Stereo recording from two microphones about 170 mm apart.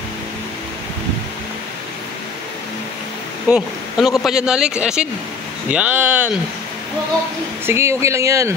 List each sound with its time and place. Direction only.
3.4 s speech: 5° right (ahead or behind)
7.6 s speech: 15° right (ahead or behind)